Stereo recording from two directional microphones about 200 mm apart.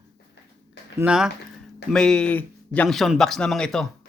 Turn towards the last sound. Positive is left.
turn(degrees=0)  # may be behind; listen again after turning